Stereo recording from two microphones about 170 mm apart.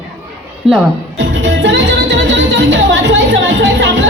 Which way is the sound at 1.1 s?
90° right.